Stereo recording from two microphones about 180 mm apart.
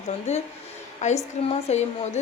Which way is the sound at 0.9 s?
40° left (ahead or behind).